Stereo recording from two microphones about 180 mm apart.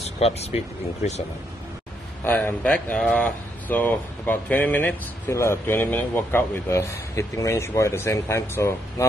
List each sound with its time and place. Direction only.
0.2 s speech: 35° left (ahead or behind)
2.2 s speech: 10° left (ahead or behind)